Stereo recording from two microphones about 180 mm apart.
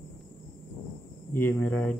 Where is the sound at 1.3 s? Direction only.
10° left (ahead or behind).